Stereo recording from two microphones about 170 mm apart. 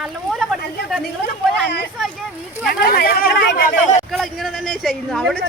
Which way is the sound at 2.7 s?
60° left (ahead or behind).